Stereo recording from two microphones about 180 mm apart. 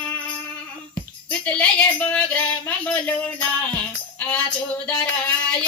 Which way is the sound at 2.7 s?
10° left (ahead or behind).